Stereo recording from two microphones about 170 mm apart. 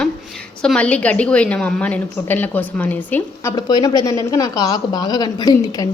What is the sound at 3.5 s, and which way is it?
Speech, 25° left (ahead or behind).